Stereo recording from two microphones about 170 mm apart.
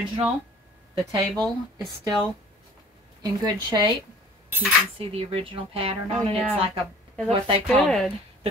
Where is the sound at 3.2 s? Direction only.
25° right (ahead or behind).